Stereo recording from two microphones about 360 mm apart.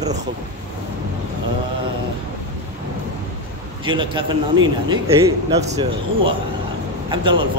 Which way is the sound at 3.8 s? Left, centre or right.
Centre.